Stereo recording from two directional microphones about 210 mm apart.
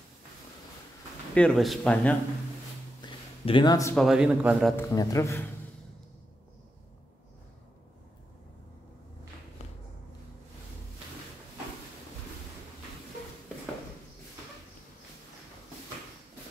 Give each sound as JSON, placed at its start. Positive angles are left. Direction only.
{"t": 1.3, "sound": "speech", "side_deg": 5}
{"t": 3.0, "sound": "a sound", "side_deg": 20}
{"t": 3.9, "sound": "speech", "side_deg": 0}
{"t": 4.7, "sound": "speech", "side_deg": 15}